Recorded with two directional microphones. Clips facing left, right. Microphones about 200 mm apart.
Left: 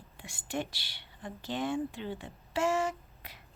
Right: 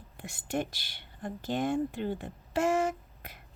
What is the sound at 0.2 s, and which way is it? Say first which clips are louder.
Speech: right 3 dB; 45° right (ahead or behind).